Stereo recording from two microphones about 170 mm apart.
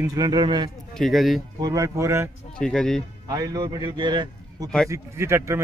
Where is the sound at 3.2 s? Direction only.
20° right (ahead or behind).